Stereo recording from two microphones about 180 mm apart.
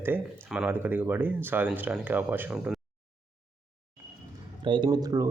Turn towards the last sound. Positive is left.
turn(degrees=-20)  # may be behind; listen again after turning